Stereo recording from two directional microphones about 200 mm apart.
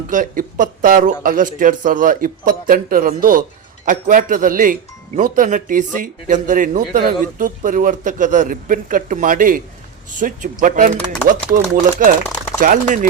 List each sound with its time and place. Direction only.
0.1 s speech: 40° right (ahead or behind)